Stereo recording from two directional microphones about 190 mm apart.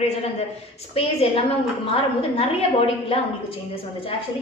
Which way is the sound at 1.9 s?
30° left (ahead or behind).